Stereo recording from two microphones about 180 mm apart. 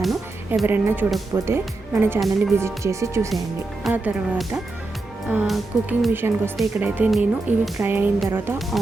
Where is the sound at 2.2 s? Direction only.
Centre (ahead or behind).